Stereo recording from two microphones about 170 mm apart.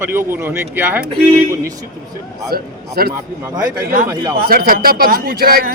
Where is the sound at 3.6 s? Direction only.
50° right (ahead or behind).